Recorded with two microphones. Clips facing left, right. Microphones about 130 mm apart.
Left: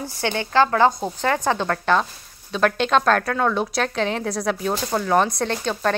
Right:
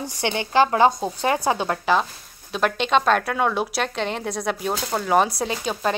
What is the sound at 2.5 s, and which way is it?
A woman's voice, centre (ahead or behind).